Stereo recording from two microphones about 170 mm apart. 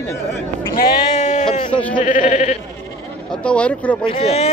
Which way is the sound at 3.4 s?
5° left (ahead or behind).